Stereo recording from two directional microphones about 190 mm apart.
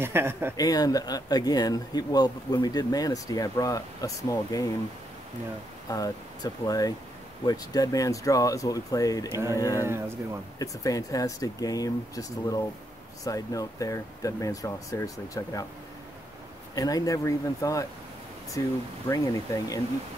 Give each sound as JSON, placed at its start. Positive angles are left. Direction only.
{"t": 0.0, "sound": "speech", "side_deg": -10}
{"t": 0.6, "sound": "speech", "side_deg": 20}
{"t": 5.9, "sound": "speech", "side_deg": 20}
{"t": 9.8, "sound": "speech", "side_deg": -15}
{"t": 10.6, "sound": "speech", "side_deg": 20}
{"t": 16.7, "sound": "speech", "side_deg": 20}